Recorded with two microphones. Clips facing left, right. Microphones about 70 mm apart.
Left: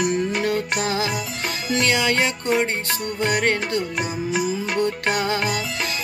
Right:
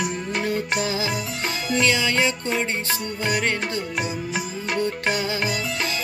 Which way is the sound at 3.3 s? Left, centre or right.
Left.